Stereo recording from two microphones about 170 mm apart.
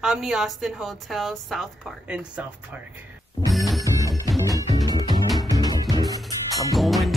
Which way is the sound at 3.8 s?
20° right (ahead or behind).